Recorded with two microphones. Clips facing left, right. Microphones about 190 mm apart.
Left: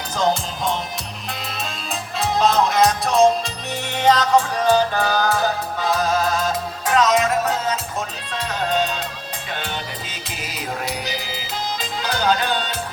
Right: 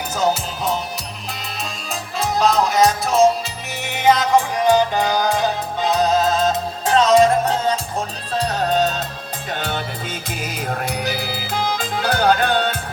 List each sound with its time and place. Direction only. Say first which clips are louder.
0.2 s music: even; 5° right (ahead or behind)
1.9 s music: right 1 dB; centre (ahead or behind); by 9.0 s 40° right (ahead or behind)
10.2 s music: right 3 dB; 50° right (ahead or behind)